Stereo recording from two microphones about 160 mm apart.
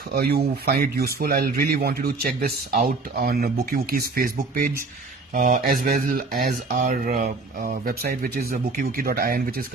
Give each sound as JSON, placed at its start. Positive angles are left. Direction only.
{"t": 0.1, "sound": "speech", "side_deg": -80}